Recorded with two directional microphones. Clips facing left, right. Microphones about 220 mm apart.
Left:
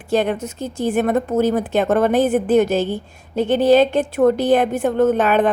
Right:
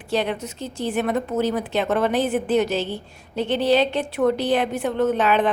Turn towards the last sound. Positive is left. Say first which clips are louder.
# left 4 dB
turn(degrees=50)  # may be behind; listen again after turning